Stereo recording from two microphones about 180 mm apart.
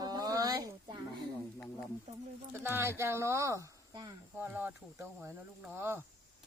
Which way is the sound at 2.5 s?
15° right (ahead or behind).